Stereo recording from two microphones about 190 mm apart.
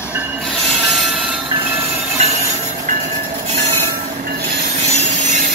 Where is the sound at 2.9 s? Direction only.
45° right (ahead or behind).